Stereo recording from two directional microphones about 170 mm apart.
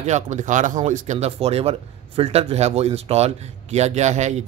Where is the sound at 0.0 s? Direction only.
45° right (ahead or behind).